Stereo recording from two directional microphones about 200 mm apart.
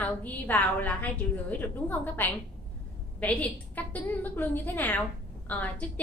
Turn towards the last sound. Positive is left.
turn(degrees=10)  # may be behind; listen again after turning